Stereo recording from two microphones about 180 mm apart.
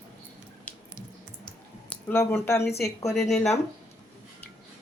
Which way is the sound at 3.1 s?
Centre (ahead or behind).